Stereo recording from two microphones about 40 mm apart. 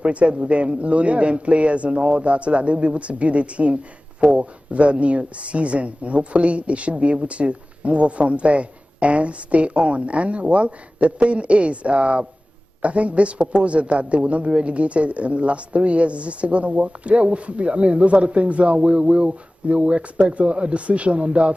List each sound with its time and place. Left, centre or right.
0.0 s a man's voice: right